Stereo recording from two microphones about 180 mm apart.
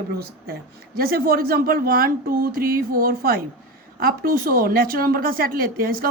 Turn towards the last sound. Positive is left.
turn(degrees=-55)  # may be behind; listen again after turning